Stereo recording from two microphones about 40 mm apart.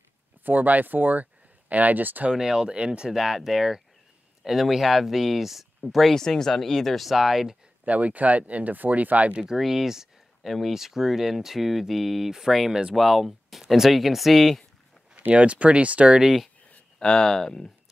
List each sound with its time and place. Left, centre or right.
0.4 s speech: right
2.3 s speech: centre
3.1 s speech: centre
7.8 s speech: right
9.6 s a sound: centre
10.5 s speech: centre
15.3 s speech: right
17.2 s speech: centre